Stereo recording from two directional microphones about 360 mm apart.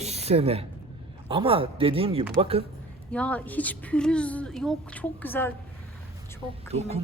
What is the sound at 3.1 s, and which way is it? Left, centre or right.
A woman's voice, centre.